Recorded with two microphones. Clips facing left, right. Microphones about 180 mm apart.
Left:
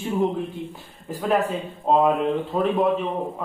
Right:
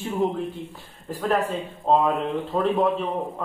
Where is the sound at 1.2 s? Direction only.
Centre (ahead or behind).